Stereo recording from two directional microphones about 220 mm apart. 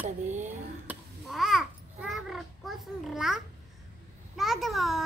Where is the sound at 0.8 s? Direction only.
Centre (ahead or behind).